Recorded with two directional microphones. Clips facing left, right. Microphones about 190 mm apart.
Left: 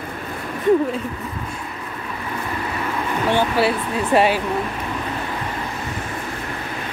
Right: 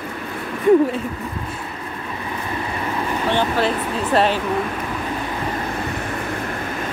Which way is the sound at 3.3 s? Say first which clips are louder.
Left 2 dB; 10° left (ahead or behind).